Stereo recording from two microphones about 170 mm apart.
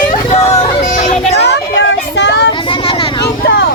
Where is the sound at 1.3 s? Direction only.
90° left.